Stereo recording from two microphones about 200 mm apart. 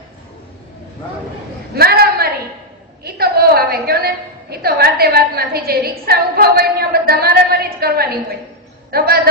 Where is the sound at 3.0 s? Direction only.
50° right (ahead or behind).